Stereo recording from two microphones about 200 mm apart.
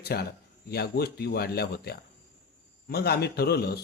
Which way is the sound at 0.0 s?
50° left (ahead or behind).